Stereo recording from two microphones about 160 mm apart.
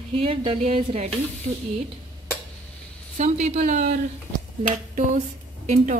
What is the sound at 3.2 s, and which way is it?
Speech, 45° right (ahead or behind).